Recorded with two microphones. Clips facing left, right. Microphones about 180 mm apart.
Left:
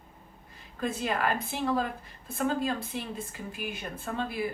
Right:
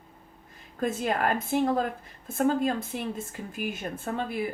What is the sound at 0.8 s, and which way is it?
A woman's voice, 45° right (ahead or behind).